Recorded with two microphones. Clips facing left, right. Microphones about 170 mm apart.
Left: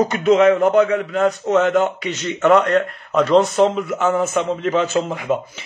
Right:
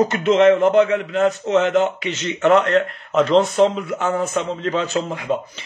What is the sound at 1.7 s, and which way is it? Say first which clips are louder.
A man's voice: even; centre (ahead or behind).